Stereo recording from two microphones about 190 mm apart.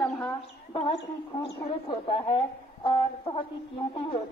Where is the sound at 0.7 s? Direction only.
30° left (ahead or behind).